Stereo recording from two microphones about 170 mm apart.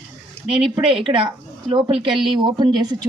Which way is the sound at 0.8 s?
30° right (ahead or behind).